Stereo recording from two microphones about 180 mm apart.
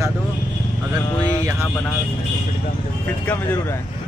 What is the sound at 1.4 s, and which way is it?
Speech, 15° right (ahead or behind).